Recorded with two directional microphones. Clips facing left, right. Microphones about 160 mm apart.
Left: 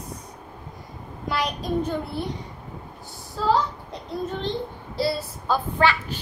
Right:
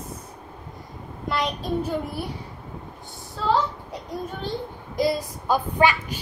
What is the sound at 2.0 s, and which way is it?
Speech, 10° right (ahead or behind).